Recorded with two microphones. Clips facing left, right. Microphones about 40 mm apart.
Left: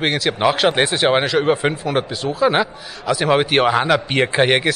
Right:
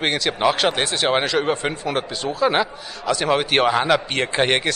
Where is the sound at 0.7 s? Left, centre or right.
Centre.